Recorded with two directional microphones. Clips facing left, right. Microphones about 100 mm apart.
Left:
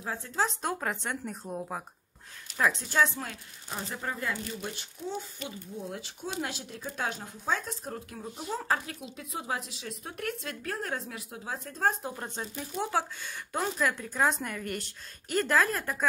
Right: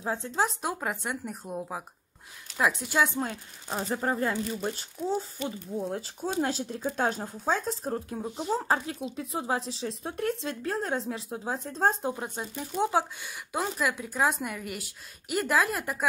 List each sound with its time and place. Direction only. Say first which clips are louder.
0.0 s speech: right 3 dB; 25° right (ahead or behind)
0.6 s speech: right 1 dB; 5° right (ahead or behind)
3.2 s speech: right 7 dB; 25° right (ahead or behind)
12.8 s speech: right 4 dB; 15° right (ahead or behind)